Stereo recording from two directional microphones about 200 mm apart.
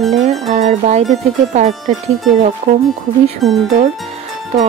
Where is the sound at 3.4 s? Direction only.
Centre (ahead or behind).